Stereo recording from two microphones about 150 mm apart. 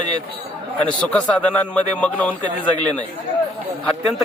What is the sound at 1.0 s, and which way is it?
Speech, 5° left (ahead or behind).